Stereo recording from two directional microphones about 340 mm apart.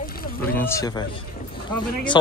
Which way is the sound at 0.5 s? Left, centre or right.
Centre.